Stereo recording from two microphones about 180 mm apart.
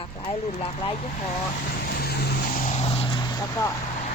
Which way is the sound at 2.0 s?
60° left (ahead or behind).